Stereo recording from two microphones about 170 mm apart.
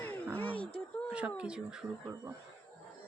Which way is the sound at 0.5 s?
30° left (ahead or behind).